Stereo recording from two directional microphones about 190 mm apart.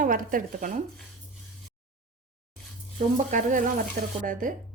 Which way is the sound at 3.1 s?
45° right (ahead or behind).